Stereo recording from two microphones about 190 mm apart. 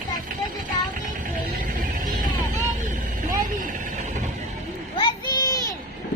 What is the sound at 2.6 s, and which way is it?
Vehicle, 45° right (ahead or behind).